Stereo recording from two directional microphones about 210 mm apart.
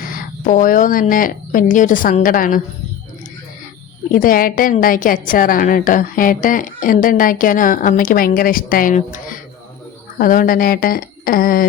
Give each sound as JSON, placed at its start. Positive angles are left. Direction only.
{"t": 0.1, "sound": "speech", "side_deg": 40}
{"t": 4.1, "sound": "a woman's voice", "side_deg": 40}